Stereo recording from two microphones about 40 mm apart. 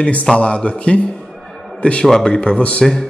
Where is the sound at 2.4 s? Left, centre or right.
Left.